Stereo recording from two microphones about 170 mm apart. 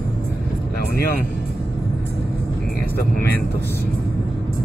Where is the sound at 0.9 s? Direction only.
60° left (ahead or behind).